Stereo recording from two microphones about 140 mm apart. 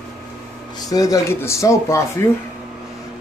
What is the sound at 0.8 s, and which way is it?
Speech, 25° left (ahead or behind).